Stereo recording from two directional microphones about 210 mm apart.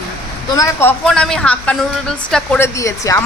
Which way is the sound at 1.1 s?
5° left (ahead or behind).